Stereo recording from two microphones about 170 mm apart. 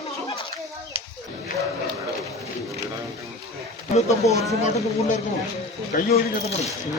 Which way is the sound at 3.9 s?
40° left (ahead or behind).